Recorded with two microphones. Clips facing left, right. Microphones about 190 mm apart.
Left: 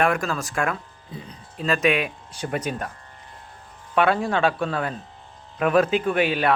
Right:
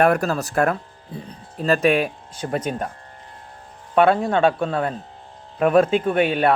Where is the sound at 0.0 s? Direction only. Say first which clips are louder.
Right 5 dB; 40° right (ahead or behind).